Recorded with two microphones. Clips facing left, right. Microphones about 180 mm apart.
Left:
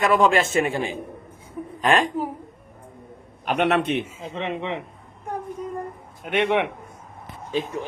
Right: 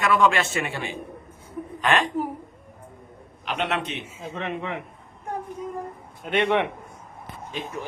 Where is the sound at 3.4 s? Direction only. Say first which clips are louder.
Left 7 dB; 55° left (ahead or behind).